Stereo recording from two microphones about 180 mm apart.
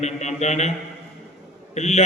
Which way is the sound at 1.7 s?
35° left (ahead or behind).